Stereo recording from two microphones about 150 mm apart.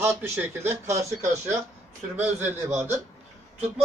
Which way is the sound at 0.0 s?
15° right (ahead or behind).